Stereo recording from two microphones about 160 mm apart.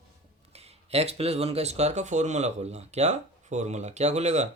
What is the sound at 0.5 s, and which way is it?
Speech, 40° right (ahead or behind).